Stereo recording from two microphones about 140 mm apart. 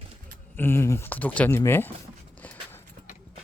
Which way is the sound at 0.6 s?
15° left (ahead or behind).